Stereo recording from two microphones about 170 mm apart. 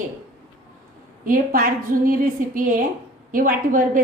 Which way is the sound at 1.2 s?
55° right (ahead or behind).